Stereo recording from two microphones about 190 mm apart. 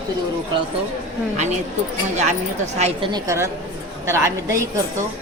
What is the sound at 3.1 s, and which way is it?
Speech, 15° right (ahead or behind).